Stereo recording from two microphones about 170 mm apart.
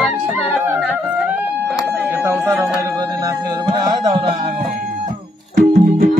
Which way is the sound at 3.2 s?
25° right (ahead or behind).